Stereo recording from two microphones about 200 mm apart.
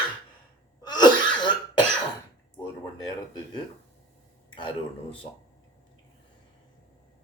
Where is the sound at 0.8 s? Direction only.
20° left (ahead or behind).